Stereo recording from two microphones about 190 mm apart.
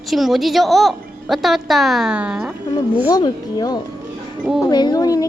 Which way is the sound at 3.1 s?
20° left (ahead or behind).